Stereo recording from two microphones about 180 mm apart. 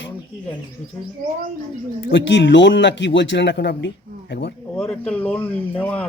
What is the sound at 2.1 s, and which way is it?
Speech, 85° left.